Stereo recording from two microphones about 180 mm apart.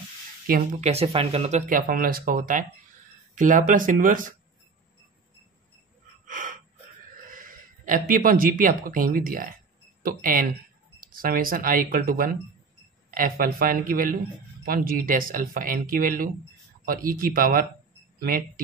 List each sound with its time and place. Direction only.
0.5 s speech: 45° right (ahead or behind)
1.7 s speech: 55° right (ahead or behind)
6.2 s gasp: 45° right (ahead or behind)
7.2 s speech: 50° right (ahead or behind)